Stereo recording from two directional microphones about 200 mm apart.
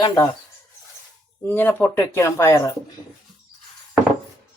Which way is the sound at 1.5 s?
10° left (ahead or behind).